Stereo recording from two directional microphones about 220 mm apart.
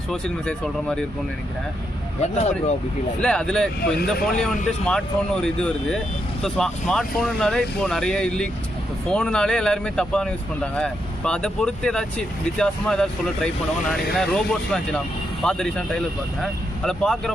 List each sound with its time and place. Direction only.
0.1 s speech: 5° left (ahead or behind)
2.2 s speech: 30° left (ahead or behind)
3.2 s speech: 5° left (ahead or behind)